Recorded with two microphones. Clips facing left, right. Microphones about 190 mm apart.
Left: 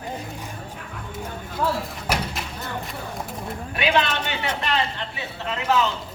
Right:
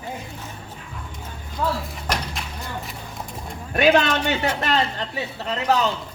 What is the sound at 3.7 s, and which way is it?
A man's voice, 45° right (ahead or behind).